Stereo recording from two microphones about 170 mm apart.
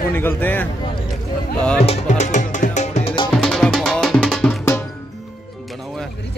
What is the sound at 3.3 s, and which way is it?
Music, 5° left (ahead or behind).